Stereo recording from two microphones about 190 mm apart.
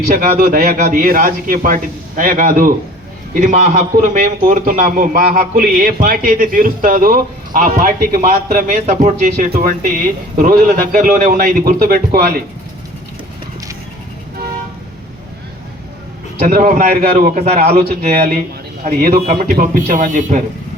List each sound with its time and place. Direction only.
0.1 s speech: 50° right (ahead or behind)
16.5 s speech: 45° right (ahead or behind)